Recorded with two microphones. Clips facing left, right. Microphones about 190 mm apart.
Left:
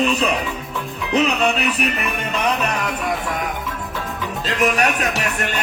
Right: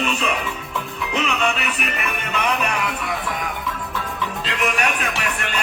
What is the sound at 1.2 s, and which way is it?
Music, 35° left (ahead or behind).